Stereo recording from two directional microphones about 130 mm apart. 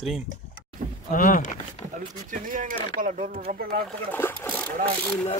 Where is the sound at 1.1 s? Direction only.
90° left.